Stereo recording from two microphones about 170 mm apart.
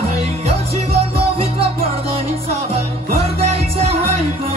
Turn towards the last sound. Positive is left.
turn(degrees=-35)  # may be behind; listen again after turning